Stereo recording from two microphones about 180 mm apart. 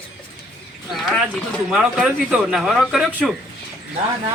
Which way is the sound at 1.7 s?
5° right (ahead or behind).